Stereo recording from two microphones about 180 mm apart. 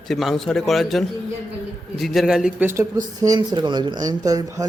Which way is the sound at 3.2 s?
20° right (ahead or behind).